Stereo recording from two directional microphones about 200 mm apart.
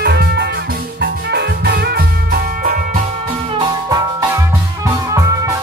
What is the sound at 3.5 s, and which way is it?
Music, 15° right (ahead or behind).